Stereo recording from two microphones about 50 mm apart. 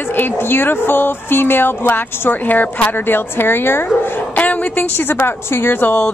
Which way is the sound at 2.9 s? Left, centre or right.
Left.